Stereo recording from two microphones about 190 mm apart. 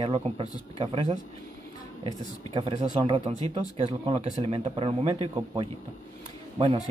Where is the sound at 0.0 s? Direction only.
25° right (ahead or behind).